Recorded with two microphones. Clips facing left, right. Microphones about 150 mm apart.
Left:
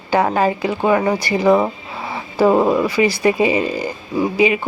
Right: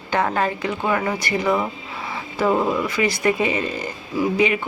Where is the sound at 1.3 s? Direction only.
35° left (ahead or behind).